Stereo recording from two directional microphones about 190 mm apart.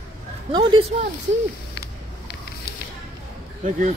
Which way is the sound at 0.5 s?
25° right (ahead or behind).